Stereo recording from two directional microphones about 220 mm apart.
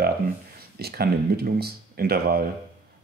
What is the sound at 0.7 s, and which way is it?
Speech, 45° right (ahead or behind).